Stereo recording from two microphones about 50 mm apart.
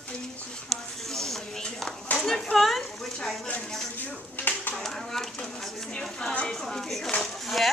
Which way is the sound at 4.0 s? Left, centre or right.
Left.